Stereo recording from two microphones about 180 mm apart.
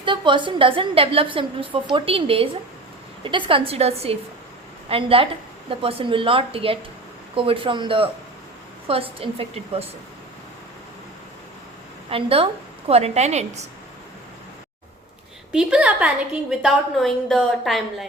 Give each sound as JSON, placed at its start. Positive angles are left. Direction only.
{"t": 0.0, "sound": "a woman's voice", "side_deg": -25}
{"t": 9.1, "sound": "a woman's voice", "side_deg": -30}
{"t": 12.1, "sound": "a woman's voice", "side_deg": -30}
{"t": 15.5, "sound": "a woman's voice", "side_deg": -5}